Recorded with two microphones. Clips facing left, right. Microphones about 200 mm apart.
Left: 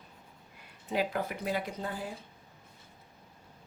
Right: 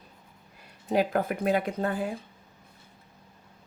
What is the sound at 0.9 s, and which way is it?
Speech, 45° right (ahead or behind).